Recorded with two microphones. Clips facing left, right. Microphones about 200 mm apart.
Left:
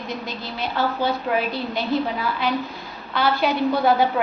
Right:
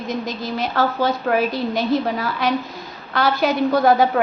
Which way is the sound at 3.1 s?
40° right (ahead or behind).